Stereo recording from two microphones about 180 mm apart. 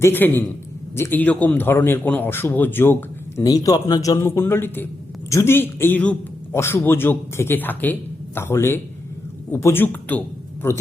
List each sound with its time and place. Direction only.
0.0 s a man's voice: 10° left (ahead or behind)